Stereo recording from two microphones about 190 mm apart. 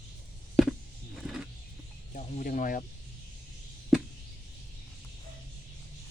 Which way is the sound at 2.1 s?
45° left (ahead or behind).